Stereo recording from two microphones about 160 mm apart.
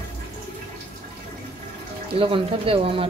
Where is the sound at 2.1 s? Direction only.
35° right (ahead or behind).